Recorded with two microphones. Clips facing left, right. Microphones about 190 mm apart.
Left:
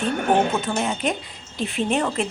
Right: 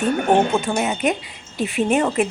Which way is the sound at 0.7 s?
5° right (ahead or behind).